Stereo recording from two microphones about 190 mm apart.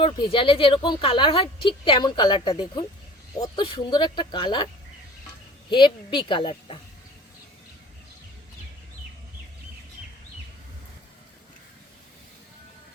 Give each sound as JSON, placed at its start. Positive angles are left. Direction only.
{"t": 0.0, "sound": "speech", "side_deg": 25}
{"t": 5.7, "sound": "speech", "side_deg": 25}